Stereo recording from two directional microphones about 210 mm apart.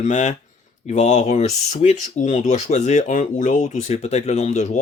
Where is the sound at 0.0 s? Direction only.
35° left (ahead or behind).